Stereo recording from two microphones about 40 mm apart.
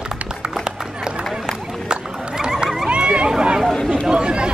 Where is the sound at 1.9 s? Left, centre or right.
Centre.